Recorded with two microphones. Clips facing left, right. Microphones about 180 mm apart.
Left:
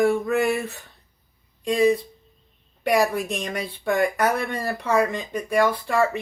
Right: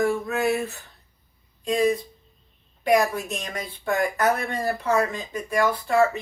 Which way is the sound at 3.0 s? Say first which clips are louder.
Left 3 dB; 90° left.